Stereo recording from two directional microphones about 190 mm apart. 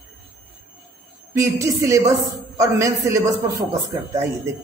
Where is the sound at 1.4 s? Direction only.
15° right (ahead or behind).